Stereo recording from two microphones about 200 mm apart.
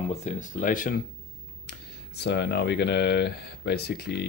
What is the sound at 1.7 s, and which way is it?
Speech, 55° left (ahead or behind).